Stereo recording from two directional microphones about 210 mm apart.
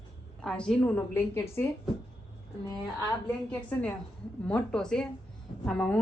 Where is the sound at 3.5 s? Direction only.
5° left (ahead or behind).